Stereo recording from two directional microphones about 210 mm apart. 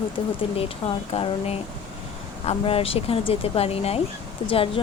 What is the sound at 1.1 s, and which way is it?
Speech, 25° left (ahead or behind).